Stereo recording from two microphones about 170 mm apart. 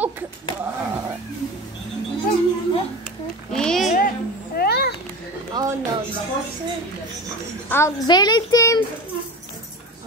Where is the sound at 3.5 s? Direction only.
5° left (ahead or behind).